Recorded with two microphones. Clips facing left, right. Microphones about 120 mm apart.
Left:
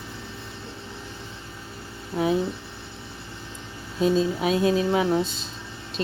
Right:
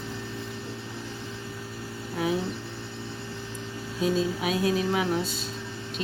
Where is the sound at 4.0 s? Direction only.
25° left (ahead or behind).